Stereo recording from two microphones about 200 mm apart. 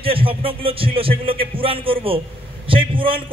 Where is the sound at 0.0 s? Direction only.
25° right (ahead or behind).